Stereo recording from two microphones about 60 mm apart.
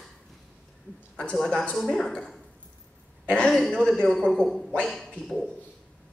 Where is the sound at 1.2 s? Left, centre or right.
Centre.